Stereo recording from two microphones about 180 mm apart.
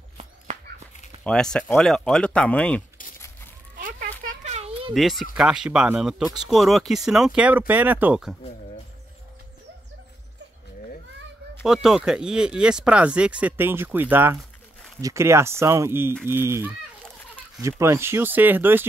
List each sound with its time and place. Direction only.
1.2 s speech: 5° left (ahead or behind)
3.7 s children playing: 55° right (ahead or behind)
4.3 s a sound: 35° right (ahead or behind)
4.9 s speech: centre (ahead or behind)
11.6 s speech: 5° right (ahead or behind)